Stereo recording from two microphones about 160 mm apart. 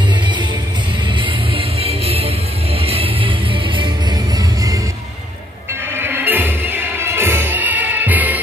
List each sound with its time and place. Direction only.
1.2 s music: 35° right (ahead or behind)
5.9 s music: 15° right (ahead or behind)